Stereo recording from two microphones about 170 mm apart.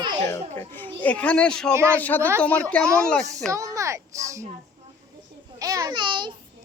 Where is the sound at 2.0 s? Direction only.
10° left (ahead or behind).